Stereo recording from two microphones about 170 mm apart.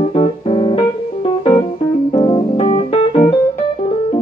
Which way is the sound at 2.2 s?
25° left (ahead or behind).